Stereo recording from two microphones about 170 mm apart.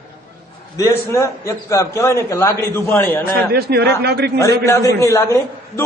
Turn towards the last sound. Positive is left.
turn(degrees=15)  # may be behind; listen again after turning